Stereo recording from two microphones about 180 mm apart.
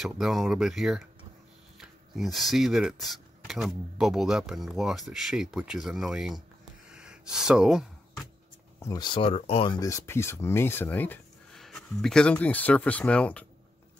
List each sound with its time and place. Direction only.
0.0 s speech: centre (ahead or behind)
6.9 s a sound: 5° right (ahead or behind)
8.7 s speech: 20° left (ahead or behind)
9.8 s speech: 15° left (ahead or behind)